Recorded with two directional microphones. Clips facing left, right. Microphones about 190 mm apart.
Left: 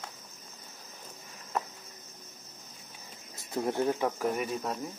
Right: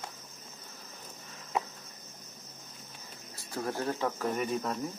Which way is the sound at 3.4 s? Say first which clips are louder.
Left 5 dB; 20° left (ahead or behind).